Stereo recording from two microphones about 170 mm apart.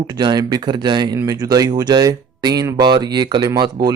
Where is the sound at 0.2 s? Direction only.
25° right (ahead or behind).